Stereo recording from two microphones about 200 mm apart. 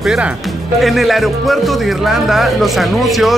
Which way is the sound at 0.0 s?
5° right (ahead or behind).